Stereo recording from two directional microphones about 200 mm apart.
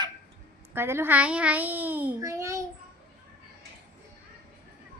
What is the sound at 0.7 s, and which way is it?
A child's voice, 10° right (ahead or behind).